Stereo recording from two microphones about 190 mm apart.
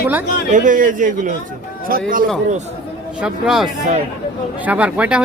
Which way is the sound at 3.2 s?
Centre (ahead or behind).